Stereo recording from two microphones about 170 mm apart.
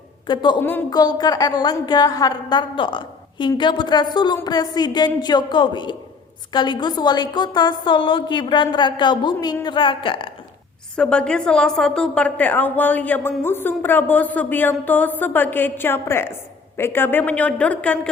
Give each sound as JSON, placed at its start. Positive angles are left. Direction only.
{"t": 0.3, "sound": "a woman's voice", "side_deg": 25}
{"t": 0.6, "sound": "speech", "side_deg": 10}
{"t": 0.9, "sound": "a woman's voice", "side_deg": 25}
{"t": 10.9, "sound": "speech", "side_deg": 5}